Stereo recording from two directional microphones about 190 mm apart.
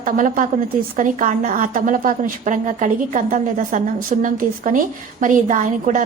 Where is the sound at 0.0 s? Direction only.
45° right (ahead or behind).